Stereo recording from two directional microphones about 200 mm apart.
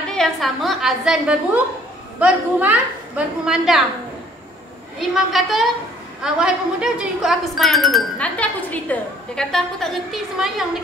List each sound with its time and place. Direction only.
0.2 s a woman's voice: centre (ahead or behind)
4.9 s a woman's voice: centre (ahead or behind)